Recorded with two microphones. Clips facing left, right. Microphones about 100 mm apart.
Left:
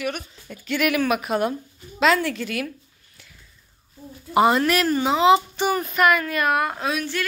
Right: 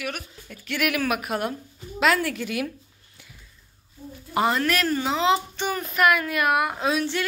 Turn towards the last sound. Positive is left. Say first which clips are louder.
# right 1 dB
turn(degrees=-25)  # may be behind; listen again after turning